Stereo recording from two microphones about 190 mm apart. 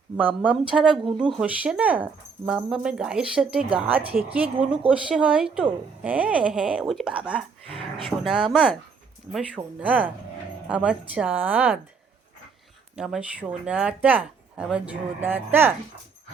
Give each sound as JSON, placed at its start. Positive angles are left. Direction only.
{"t": 0.2, "sound": "speech", "side_deg": -10}
{"t": 7.7, "sound": "speech", "side_deg": -30}
{"t": 8.2, "sound": "speech", "side_deg": 0}
{"t": 13.0, "sound": "speech", "side_deg": -5}